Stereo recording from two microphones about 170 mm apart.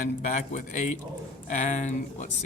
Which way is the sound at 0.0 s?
50° left (ahead or behind).